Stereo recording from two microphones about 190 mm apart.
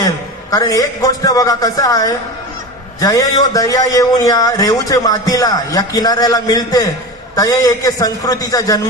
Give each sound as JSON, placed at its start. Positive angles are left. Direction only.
{"t": 0.0, "sound": "a man's voice", "side_deg": 20}